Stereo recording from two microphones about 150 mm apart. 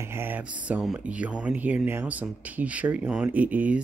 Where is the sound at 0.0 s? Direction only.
15° right (ahead or behind).